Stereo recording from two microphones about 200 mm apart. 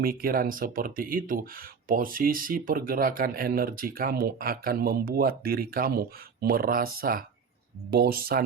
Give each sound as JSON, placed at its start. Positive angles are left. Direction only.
{"t": 0.0, "sound": "speech", "side_deg": -45}